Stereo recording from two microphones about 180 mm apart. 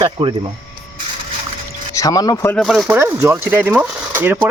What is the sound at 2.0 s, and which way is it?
Speech, 20° left (ahead or behind).